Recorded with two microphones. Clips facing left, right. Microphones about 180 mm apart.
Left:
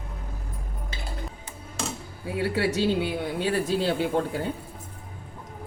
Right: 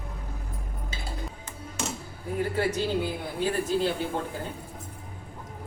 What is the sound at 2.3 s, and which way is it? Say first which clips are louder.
Speech: left 2 dB; 75° left (ahead or behind).